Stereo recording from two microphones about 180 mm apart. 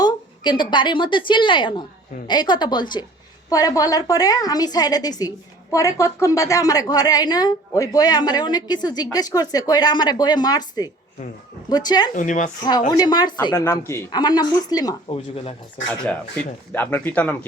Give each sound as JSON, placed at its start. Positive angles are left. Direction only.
{"t": 0.0, "sound": "a woman's voice", "side_deg": 25}
{"t": 12.1, "sound": "speech", "side_deg": 45}
{"t": 12.9, "sound": "a woman's voice", "side_deg": 20}
{"t": 15.1, "sound": "speech", "side_deg": 35}
{"t": 16.7, "sound": "speech", "side_deg": 10}